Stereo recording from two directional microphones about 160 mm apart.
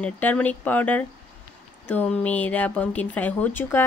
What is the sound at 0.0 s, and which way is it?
Speech, 10° left (ahead or behind).